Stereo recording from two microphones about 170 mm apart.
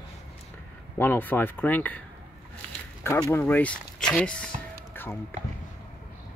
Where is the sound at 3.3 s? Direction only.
10° left (ahead or behind).